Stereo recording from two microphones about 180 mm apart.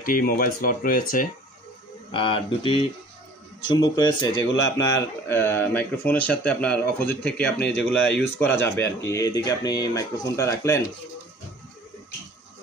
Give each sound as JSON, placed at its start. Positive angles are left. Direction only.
{"t": 0.0, "sound": "speech", "side_deg": 50}
{"t": 2.1, "sound": "speech", "side_deg": 30}
{"t": 5.3, "sound": "speech", "side_deg": 10}